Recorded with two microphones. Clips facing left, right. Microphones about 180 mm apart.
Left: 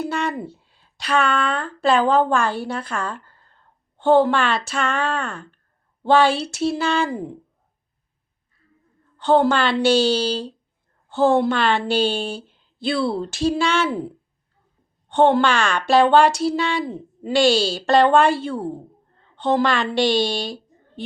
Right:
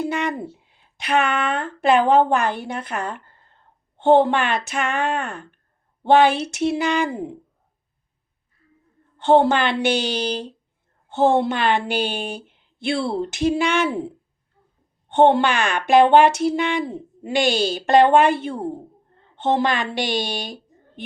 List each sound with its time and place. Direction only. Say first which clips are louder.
0.0 s a woman's voice: right 1 dB; 20° right (ahead or behind)
9.1 s a woman's voice: right 1 dB; 25° right (ahead or behind)
15.1 s a woman's voice: right 1 dB; 20° right (ahead or behind)